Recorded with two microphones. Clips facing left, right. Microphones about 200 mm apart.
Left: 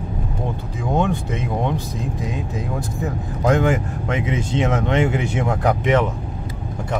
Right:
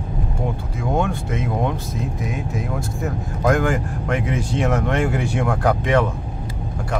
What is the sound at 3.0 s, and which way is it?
Speech, 20° left (ahead or behind).